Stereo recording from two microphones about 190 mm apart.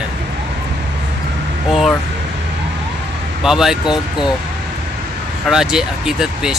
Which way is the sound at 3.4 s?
5° right (ahead or behind).